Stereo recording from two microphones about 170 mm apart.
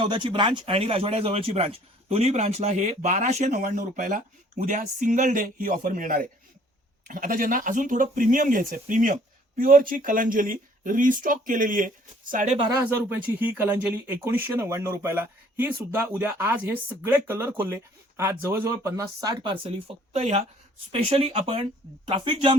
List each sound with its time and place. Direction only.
0.0 s speech: 30° right (ahead or behind); by 12.5 s 50° right (ahead or behind)
12.7 s speech: 10° right (ahead or behind); by 19.7 s 30° right (ahead or behind)
20.1 s speech: 40° right (ahead or behind)